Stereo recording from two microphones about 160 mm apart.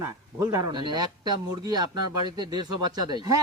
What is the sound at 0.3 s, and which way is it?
Speech, 25° right (ahead or behind).